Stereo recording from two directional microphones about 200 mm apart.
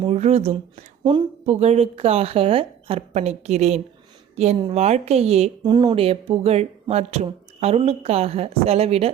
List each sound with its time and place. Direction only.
0.0 s a woman's voice: 30° right (ahead or behind)